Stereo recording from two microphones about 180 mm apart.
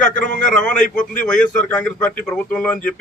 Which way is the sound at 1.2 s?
5° left (ahead or behind).